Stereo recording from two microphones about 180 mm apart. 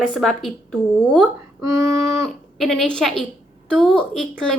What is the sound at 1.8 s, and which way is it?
Speech, 15° right (ahead or behind).